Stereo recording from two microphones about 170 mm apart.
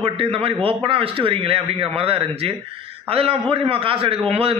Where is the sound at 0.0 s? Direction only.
35° right (ahead or behind).